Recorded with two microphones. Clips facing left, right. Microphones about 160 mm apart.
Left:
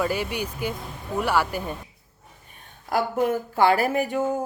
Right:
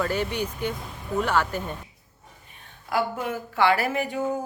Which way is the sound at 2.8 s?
45° left (ahead or behind).